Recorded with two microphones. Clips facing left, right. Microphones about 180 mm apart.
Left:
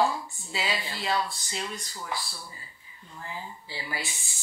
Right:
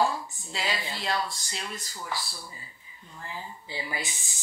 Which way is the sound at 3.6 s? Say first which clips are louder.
Right 3 dB; 20° right (ahead or behind).